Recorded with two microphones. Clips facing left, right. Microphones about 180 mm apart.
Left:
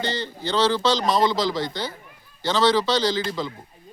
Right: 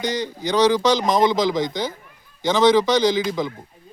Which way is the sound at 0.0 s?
15° right (ahead or behind).